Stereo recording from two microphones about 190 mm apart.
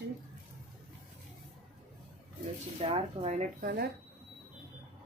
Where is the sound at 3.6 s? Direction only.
55° right (ahead or behind).